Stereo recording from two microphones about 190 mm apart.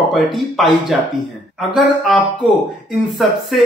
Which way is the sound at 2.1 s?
Centre (ahead or behind).